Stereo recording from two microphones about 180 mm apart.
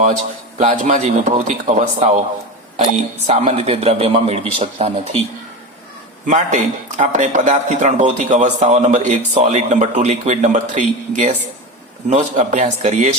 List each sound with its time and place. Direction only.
0.6 s speech: 40° right (ahead or behind)
3.2 s speech: 35° right (ahead or behind)
6.2 s speech: 40° right (ahead or behind)